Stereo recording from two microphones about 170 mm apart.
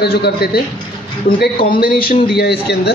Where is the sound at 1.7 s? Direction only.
60° left (ahead or behind).